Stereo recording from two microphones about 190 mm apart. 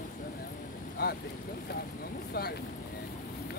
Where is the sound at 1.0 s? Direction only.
55° left (ahead or behind).